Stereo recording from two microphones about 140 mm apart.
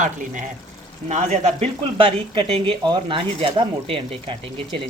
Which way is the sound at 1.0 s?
55° right (ahead or behind).